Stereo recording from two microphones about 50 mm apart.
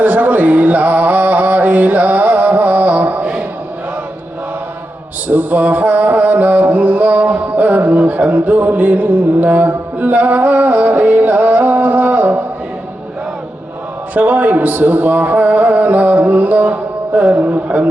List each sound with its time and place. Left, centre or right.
0.0 s music: right
5.3 s music: right
14.1 s music: right